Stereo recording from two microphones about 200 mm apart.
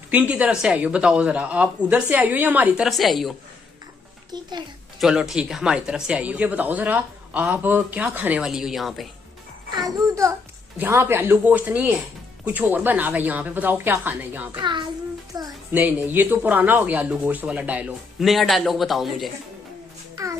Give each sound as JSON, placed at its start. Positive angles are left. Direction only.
{"t": 0.1, "sound": "a woman's voice", "side_deg": -10}
{"t": 4.3, "sound": "a child's voice", "side_deg": -20}
{"t": 4.9, "sound": "speech", "side_deg": 0}
{"t": 9.8, "sound": "a child's voice", "side_deg": -20}
{"t": 14.6, "sound": "a child's voice", "side_deg": -25}